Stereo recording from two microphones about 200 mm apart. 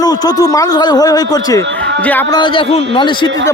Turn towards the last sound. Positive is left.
turn(degrees=25)  # may be behind; listen again after turning